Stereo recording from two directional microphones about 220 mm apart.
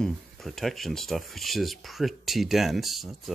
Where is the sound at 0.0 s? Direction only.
Centre (ahead or behind).